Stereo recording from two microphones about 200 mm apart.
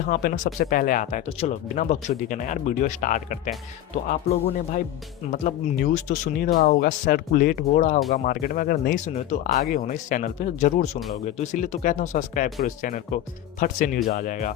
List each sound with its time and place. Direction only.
0.1 s speech: 45° left (ahead or behind)